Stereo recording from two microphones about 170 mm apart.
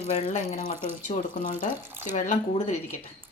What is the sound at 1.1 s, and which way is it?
Speech, 50° left (ahead or behind).